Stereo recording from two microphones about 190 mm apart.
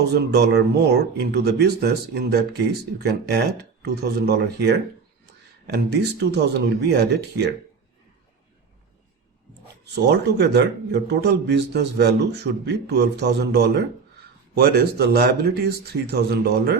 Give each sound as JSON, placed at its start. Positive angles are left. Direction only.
{"t": 0.1, "sound": "a man's voice", "side_deg": -60}
{"t": 9.9, "sound": "a man's voice", "side_deg": -60}